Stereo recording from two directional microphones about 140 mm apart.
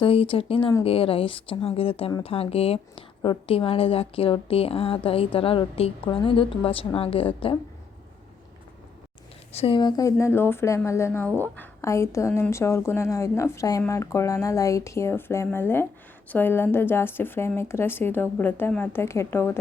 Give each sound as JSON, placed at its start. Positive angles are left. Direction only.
{"t": 0.0, "sound": "a woman's voice", "side_deg": 40}
{"t": 9.5, "sound": "a woman's voice", "side_deg": 45}